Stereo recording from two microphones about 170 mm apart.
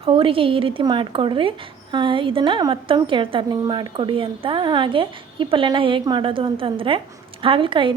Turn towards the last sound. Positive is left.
turn(degrees=-30)  # may be behind; listen again after turning